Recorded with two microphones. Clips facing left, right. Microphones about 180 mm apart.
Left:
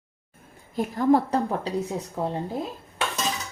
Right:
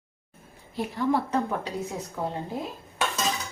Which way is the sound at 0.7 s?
45° left (ahead or behind).